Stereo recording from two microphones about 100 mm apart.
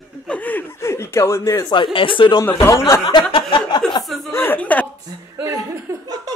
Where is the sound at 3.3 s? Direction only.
60° left (ahead or behind).